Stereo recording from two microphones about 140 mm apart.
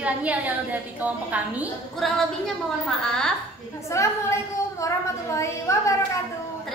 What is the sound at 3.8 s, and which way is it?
A woman's voice, 20° left (ahead or behind).